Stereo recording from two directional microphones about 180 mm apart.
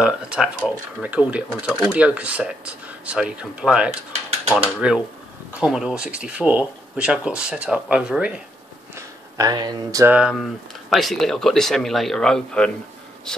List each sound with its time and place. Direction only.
0.0 s speech: 5° right (ahead or behind)
8.9 s speech: 20° right (ahead or behind); by 12.7 s 5° left (ahead or behind)